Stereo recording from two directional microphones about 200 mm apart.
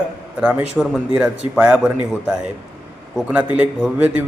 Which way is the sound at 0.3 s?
5° right (ahead or behind).